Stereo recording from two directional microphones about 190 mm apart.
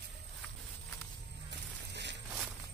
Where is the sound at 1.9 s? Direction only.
65° right (ahead or behind).